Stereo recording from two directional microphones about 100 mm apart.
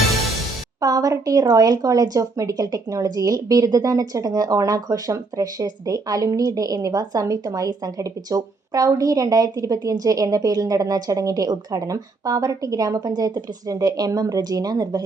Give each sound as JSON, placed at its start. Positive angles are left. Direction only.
{"t": 0.8, "sound": "speech", "side_deg": -35}